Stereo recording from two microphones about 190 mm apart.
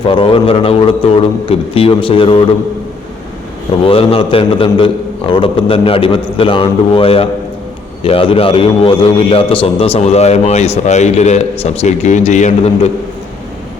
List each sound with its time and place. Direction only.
0.0 s a man's voice: 25° left (ahead or behind)
3.8 s a man's voice: 30° left (ahead or behind)